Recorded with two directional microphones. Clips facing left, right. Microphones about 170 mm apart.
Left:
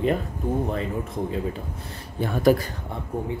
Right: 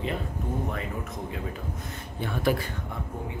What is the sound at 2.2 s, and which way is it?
Speech, 40° left (ahead or behind).